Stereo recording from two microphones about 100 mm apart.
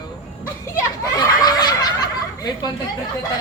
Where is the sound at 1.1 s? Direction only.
40° left (ahead or behind).